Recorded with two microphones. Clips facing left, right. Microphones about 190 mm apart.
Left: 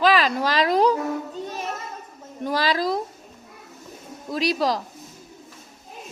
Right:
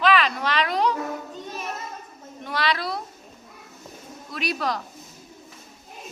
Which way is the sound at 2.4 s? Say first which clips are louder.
Left 4 dB; 40° left (ahead or behind).